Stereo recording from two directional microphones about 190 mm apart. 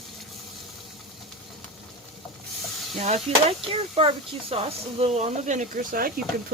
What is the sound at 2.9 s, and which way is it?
A woman's voice, 35° right (ahead or behind).